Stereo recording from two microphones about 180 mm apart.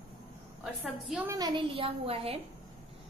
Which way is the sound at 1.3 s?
20° right (ahead or behind).